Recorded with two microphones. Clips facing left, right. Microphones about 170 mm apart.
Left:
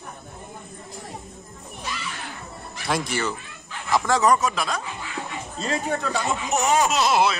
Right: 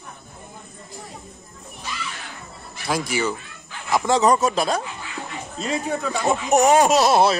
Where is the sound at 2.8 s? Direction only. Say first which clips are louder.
Right 2 dB; centre (ahead or behind).